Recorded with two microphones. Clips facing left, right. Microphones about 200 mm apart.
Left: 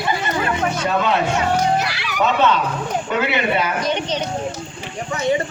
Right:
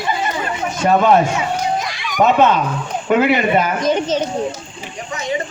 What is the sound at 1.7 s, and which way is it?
Music, 70° left (ahead or behind).